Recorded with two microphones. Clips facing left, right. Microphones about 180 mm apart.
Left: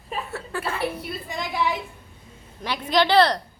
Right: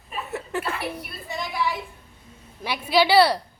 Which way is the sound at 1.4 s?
20° left (ahead or behind).